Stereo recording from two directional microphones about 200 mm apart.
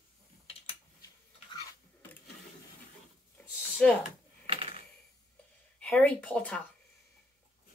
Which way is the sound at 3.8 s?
5° left (ahead or behind).